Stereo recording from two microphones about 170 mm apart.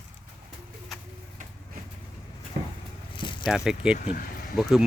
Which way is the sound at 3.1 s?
30° left (ahead or behind).